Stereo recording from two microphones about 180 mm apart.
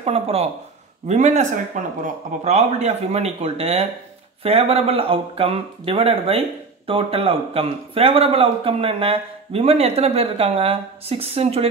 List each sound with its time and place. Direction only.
0.0 s a man's voice: 35° right (ahead or behind)